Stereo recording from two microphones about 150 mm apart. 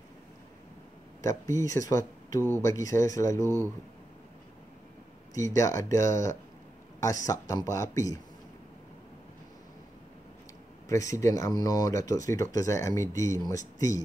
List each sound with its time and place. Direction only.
1.2 s speech: 20° left (ahead or behind)
3.4 s speech: 20° right (ahead or behind)
5.4 s speech: 20° left (ahead or behind)
10.9 s speech: 20° left (ahead or behind)